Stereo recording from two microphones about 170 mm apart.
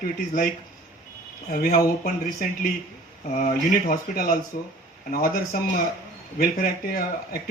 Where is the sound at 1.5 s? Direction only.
60° left (ahead or behind).